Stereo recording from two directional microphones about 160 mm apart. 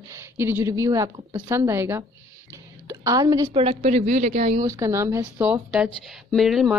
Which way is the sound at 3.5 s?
35° right (ahead or behind).